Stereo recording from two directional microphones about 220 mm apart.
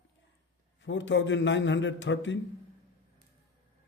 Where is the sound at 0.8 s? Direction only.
55° left (ahead or behind).